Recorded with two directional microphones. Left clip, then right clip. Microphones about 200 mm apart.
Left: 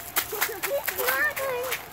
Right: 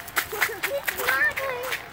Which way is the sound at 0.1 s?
20° left (ahead or behind).